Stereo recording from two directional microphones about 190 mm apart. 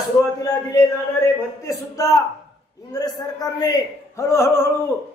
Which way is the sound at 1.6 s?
20° left (ahead or behind).